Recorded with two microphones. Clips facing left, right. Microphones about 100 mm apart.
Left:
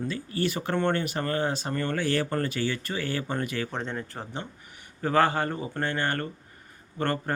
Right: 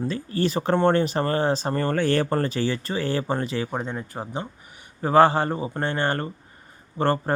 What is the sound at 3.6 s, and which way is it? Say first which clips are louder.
Speech: right 3 dB; 10° right (ahead or behind).